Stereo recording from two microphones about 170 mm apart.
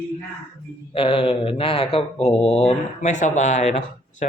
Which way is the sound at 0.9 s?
35° left (ahead or behind).